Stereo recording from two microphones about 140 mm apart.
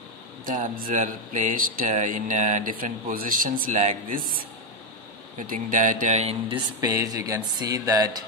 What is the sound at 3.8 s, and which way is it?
Speech, 65° right (ahead or behind).